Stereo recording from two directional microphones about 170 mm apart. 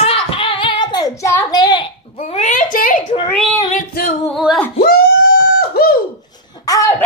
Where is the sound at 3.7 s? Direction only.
55° left (ahead or behind).